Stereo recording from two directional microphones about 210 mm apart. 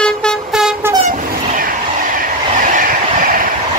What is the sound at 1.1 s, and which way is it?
Vehicle, 40° right (ahead or behind).